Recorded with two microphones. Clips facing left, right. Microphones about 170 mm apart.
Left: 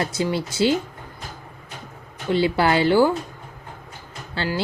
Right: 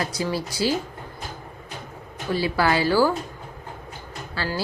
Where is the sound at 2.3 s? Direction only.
25° left (ahead or behind).